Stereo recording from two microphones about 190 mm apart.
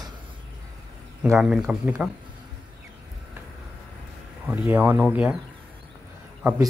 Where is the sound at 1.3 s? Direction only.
5° right (ahead or behind).